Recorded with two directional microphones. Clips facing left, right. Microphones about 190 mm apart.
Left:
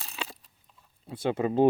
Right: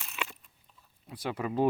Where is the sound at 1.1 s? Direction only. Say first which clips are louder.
Left 6 dB; 25° left (ahead or behind).